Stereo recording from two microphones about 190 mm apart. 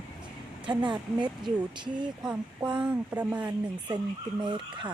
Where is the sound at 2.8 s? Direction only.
5° right (ahead or behind).